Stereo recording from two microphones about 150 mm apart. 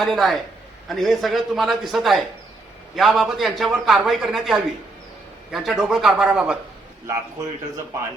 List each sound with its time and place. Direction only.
0.0 s a man's voice: centre (ahead or behind)